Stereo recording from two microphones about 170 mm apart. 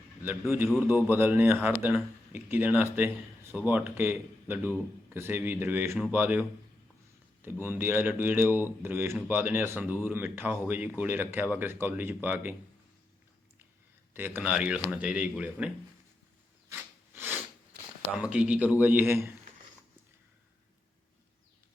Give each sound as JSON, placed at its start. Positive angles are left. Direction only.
{"t": 0.8, "sound": "speech", "side_deg": -10}
{"t": 7.6, "sound": "speech", "side_deg": -10}
{"t": 14.1, "sound": "speech", "side_deg": -10}
{"t": 16.6, "sound": "a sound", "side_deg": -15}
{"t": 18.2, "sound": "speech", "side_deg": -5}